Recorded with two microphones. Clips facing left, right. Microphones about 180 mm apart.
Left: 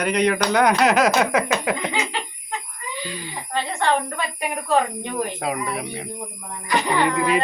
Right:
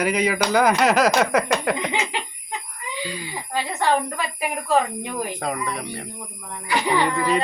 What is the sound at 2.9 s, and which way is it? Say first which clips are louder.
A woman's voice: right 1 dB; 10° right (ahead or behind).